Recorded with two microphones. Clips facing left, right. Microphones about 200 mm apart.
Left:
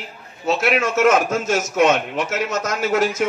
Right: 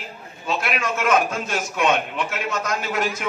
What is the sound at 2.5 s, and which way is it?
Speech, 45° left (ahead or behind).